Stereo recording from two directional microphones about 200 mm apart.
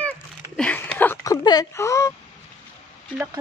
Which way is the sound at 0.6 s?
5° left (ahead or behind).